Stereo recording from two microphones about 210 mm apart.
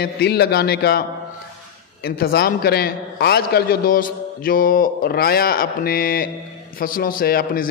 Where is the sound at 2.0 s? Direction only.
50° left (ahead or behind).